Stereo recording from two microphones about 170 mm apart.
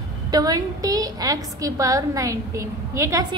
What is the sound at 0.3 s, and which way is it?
A woman's voice, 20° right (ahead or behind).